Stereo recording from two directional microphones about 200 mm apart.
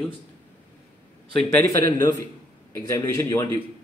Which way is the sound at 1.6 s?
15° left (ahead or behind).